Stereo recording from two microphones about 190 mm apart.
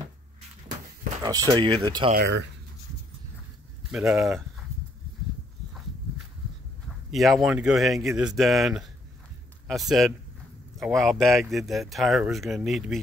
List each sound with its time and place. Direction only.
1.2 s speech: 20° right (ahead or behind)
2.1 s speech: 65° right (ahead or behind)
4.1 s speech: centre (ahead or behind)
7.1 s speech: centre (ahead or behind)